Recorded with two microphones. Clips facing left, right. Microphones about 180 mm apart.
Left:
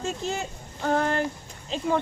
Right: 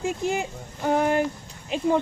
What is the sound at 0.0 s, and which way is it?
Speech, 15° right (ahead or behind).